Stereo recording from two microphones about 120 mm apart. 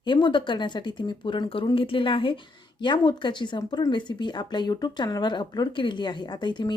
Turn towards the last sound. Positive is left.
turn(degrees=40)  # may be behind; listen again after turning